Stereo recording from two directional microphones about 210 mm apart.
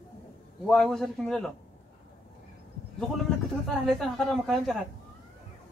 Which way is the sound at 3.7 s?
Centre (ahead or behind).